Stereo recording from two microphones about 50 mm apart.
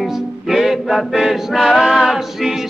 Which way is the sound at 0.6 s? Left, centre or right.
Centre.